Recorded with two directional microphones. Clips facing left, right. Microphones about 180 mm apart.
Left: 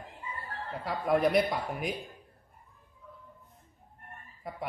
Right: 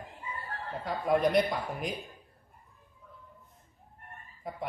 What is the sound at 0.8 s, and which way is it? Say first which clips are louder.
Speech: even; 5° left (ahead or behind).